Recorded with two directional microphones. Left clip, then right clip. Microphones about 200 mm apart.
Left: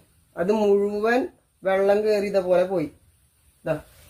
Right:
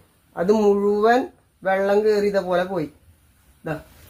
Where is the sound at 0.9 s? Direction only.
10° right (ahead or behind).